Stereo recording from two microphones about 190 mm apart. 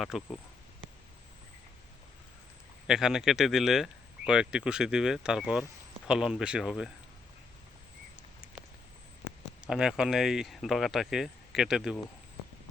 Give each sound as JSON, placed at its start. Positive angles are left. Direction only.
{"t": 0.0, "sound": "speech", "side_deg": 0}
{"t": 2.8, "sound": "speech", "side_deg": -5}
{"t": 9.6, "sound": "speech", "side_deg": -5}